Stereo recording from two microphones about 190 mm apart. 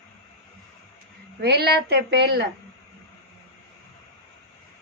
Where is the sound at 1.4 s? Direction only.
60° right (ahead or behind).